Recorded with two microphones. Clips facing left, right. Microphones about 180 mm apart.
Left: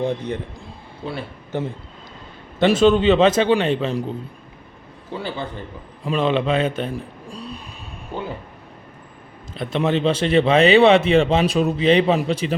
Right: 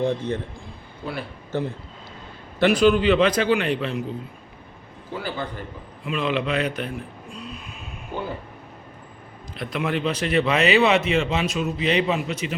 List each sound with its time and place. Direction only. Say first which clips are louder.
0.0 s a man's voice: even; 15° left (ahead or behind)
5.1 s speech: left 2 dB; 25° left (ahead or behind)
9.6 s speech: left 5 dB; 25° left (ahead or behind)